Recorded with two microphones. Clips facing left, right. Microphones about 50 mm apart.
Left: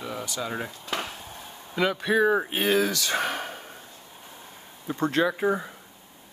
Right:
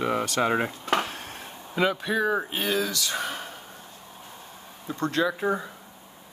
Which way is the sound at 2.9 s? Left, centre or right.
Left.